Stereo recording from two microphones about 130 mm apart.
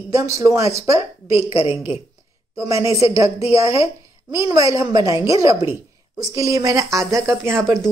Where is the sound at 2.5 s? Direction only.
20° right (ahead or behind).